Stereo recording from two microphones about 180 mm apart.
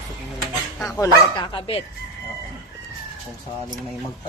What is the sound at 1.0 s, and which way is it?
Speech, 20° left (ahead or behind).